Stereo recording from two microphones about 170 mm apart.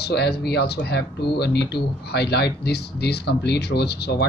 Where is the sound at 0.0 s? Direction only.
75° left (ahead or behind).